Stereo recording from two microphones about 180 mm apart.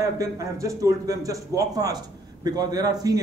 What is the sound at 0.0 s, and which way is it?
A man's voice, 15° right (ahead or behind).